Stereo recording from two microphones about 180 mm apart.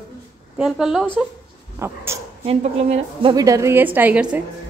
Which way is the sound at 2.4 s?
35° right (ahead or behind).